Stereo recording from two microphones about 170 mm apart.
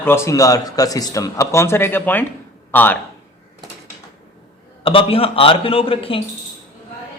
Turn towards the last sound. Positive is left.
turn(degrees=35)  # may be behind; listen again after turning